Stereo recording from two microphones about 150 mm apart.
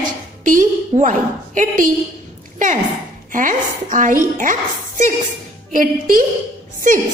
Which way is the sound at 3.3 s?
60° right (ahead or behind).